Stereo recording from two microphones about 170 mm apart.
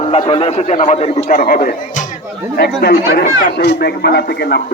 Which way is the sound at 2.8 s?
70° left (ahead or behind).